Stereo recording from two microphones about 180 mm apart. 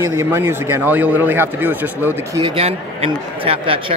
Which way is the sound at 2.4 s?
35° right (ahead or behind).